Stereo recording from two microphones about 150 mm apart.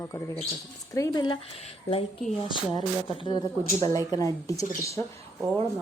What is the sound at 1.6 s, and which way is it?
A woman's voice, 40° left (ahead or behind).